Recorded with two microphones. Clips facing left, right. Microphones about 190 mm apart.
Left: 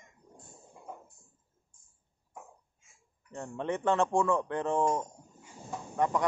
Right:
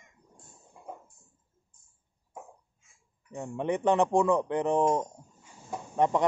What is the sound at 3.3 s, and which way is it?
A man's voice, 15° right (ahead or behind).